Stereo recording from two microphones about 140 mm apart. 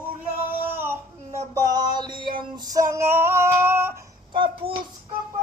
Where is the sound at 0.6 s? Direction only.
15° right (ahead or behind).